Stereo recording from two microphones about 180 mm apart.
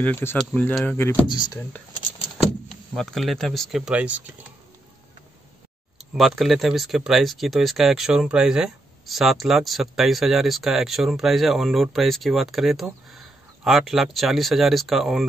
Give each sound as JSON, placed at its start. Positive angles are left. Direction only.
{"t": 0.0, "sound": "speech", "side_deg": 10}
{"t": 1.3, "sound": "speech", "side_deg": 25}
{"t": 2.9, "sound": "speech", "side_deg": 0}
{"t": 6.1, "sound": "speech", "side_deg": 0}